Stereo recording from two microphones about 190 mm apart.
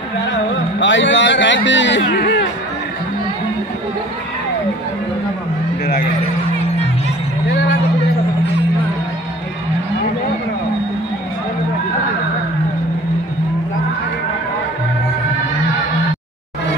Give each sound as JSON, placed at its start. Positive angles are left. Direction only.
{"t": 0.3, "sound": "speech", "side_deg": 75}